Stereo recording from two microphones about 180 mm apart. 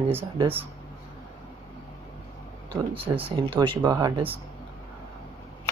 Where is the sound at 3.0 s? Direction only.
10° right (ahead or behind).